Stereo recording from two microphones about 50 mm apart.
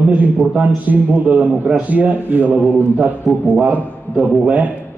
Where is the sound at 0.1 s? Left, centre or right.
Right.